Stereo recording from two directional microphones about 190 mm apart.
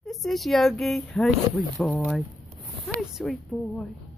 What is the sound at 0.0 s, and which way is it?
Speech, centre (ahead or behind).